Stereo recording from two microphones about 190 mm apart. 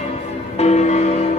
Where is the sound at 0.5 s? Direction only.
35° left (ahead or behind).